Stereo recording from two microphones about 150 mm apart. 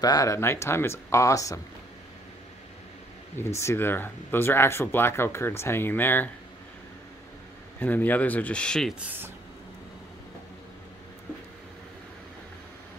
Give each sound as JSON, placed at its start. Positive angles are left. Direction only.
{"t": 0.0, "sound": "speech", "side_deg": 25}
{"t": 3.3, "sound": "speech", "side_deg": 20}
{"t": 7.8, "sound": "speech", "side_deg": 10}